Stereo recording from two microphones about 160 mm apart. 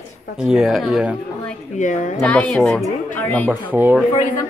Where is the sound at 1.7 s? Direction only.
50° left (ahead or behind).